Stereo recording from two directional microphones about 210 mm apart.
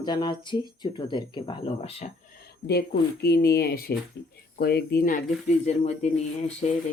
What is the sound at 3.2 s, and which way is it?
Speech, 50° left (ahead or behind).